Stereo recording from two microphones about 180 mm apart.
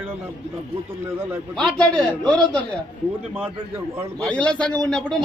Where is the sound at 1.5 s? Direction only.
5° left (ahead or behind).